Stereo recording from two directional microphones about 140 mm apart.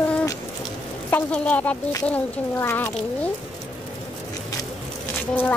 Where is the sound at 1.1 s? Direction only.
10° left (ahead or behind).